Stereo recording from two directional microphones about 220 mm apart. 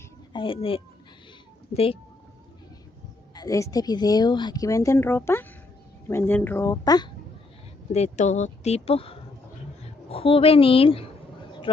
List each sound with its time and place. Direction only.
0.3 s a child's voice: 25° left (ahead or behind)
3.3 s a woman's voice: 15° left (ahead or behind)
7.9 s speech: 30° left (ahead or behind)